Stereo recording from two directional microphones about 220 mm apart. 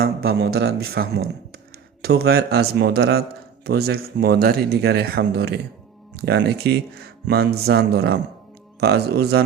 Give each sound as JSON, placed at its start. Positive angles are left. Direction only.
{"t": 0.0, "sound": "speech", "side_deg": -45}